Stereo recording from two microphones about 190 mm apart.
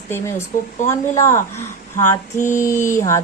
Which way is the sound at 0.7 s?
40° left (ahead or behind).